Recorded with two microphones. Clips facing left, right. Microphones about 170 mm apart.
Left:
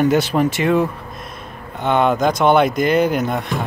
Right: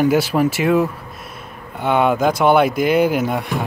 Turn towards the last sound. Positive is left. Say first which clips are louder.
# right 1 dB
turn(degrees=-10)  # may be behind; listen again after turning